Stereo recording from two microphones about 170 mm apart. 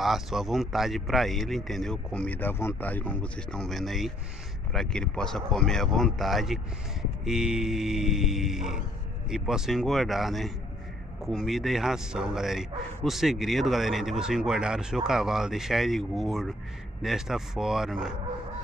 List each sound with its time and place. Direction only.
0.0 s speech: centre (ahead or behind)